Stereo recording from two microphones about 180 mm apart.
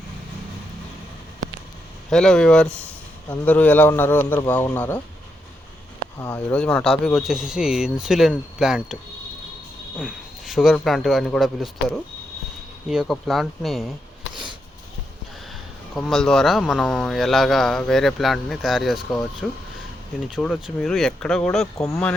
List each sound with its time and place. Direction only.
2.0 s a man's voice: 5° left (ahead or behind)
6.1 s speech: 10° left (ahead or behind)
10.0 s speech: 5° right (ahead or behind)
16.0 s speech: centre (ahead or behind)
21.8 s a man's voice: 15° left (ahead or behind)